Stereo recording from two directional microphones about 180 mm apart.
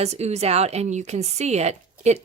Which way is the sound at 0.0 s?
35° right (ahead or behind).